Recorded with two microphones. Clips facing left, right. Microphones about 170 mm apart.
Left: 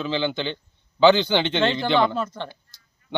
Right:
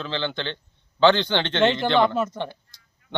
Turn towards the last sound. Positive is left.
turn(degrees=5)  # may be behind; listen again after turning